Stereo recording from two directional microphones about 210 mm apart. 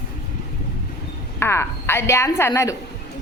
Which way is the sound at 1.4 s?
10° left (ahead or behind).